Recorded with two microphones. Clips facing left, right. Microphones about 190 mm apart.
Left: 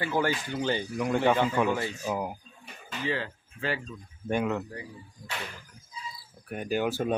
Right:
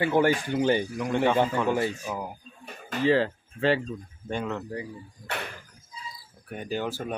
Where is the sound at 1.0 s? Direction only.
5° left (ahead or behind).